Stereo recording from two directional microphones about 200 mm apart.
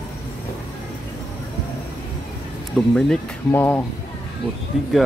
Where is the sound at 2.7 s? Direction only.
5° left (ahead or behind).